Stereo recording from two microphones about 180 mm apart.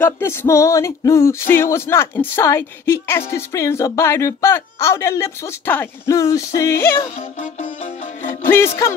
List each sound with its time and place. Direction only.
0.0 s music: 10° left (ahead or behind)
7.0 s music: 40° left (ahead or behind)
8.4 s music: 15° left (ahead or behind)